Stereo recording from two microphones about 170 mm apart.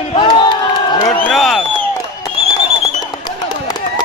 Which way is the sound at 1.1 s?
5° left (ahead or behind).